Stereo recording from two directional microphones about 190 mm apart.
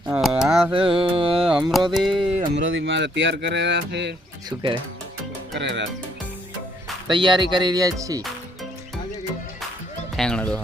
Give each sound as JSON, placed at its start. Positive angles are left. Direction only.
{"t": 0.1, "sound": "a sound", "side_deg": 0}
{"t": 0.7, "sound": "carnatic music", "side_deg": -30}
{"t": 1.5, "sound": "carnatic music", "side_deg": -5}
{"t": 2.6, "sound": "speech", "side_deg": -75}
{"t": 4.4, "sound": "speech", "side_deg": -25}
{"t": 5.5, "sound": "speech", "side_deg": -65}
{"t": 7.1, "sound": "speech", "side_deg": -25}
{"t": 10.2, "sound": "speech", "side_deg": 5}